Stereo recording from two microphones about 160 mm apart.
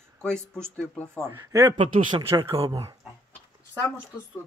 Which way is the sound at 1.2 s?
20° right (ahead or behind).